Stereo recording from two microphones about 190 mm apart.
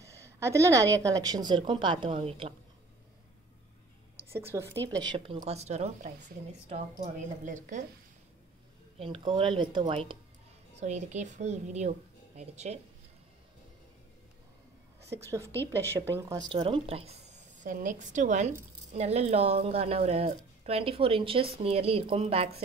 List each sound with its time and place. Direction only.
0.0 s a woman's voice: 15° right (ahead or behind)
4.3 s a woman's voice: 15° right (ahead or behind)
5.4 s a woman's voice: 35° right (ahead or behind)
8.9 s a woman's voice: 30° right (ahead or behind)
10.8 s a woman's voice: 35° right (ahead or behind)
15.1 s a woman's voice: 15° right (ahead or behind)
16.5 s a woman's voice: 30° right (ahead or behind)